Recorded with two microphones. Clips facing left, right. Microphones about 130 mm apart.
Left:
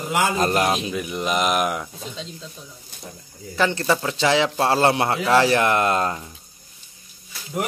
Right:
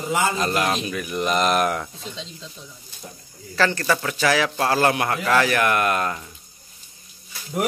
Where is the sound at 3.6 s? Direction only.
20° left (ahead or behind).